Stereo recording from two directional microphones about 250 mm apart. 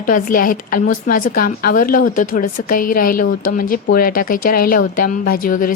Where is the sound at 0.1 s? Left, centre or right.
Left.